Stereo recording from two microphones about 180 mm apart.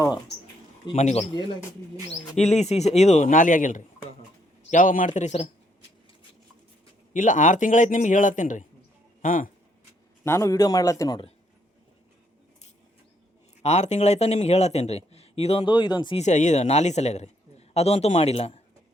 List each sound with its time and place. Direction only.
0.9 s a man's voice: 35° left (ahead or behind)
1.2 s speech: 25° left (ahead or behind)
2.0 s a man's voice: 35° left (ahead or behind)
7.1 s a man's voice: 45° left (ahead or behind)
10.2 s a man's voice: 15° left (ahead or behind)
13.6 s a man's voice: 35° left (ahead or behind)
16.1 s a man's voice: 40° left (ahead or behind)